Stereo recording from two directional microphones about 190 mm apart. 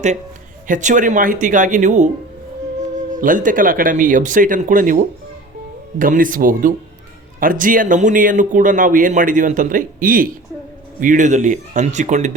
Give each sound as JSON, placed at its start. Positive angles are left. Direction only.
{"t": 0.7, "sound": "speech", "side_deg": -40}